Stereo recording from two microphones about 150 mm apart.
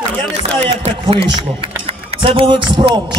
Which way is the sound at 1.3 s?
35° right (ahead or behind).